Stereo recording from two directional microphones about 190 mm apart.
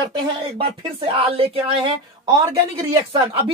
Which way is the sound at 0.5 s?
25° right (ahead or behind).